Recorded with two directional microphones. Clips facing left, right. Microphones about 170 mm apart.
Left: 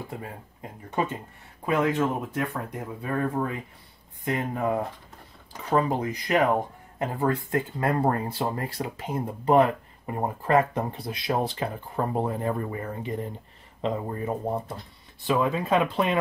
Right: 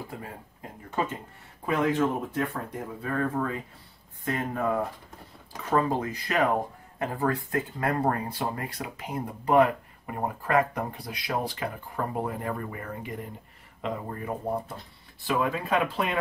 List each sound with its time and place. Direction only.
0.6 s speech: 20° left (ahead or behind)